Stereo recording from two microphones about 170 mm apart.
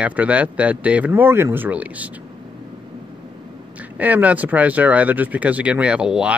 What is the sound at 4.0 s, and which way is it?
Speech, 10° right (ahead or behind).